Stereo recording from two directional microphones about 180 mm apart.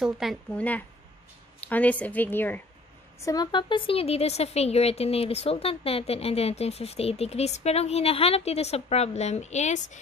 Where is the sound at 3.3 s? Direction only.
25° left (ahead or behind).